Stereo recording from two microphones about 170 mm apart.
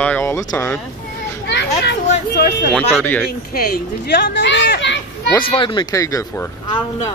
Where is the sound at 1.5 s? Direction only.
85° left.